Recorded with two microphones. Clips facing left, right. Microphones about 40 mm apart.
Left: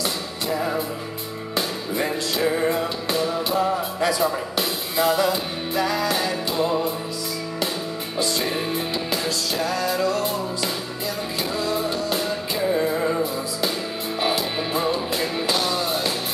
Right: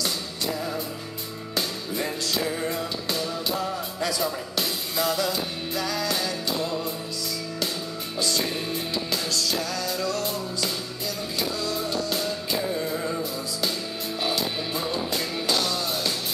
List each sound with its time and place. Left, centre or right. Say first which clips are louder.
0.6 s music: left 6 dB; left
8.2 s music: left 3 dB; centre